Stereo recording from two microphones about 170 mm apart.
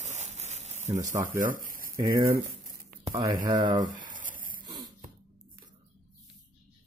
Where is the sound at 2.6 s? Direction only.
55° right (ahead or behind).